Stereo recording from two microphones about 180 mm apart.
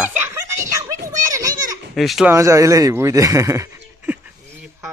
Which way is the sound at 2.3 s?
15° right (ahead or behind).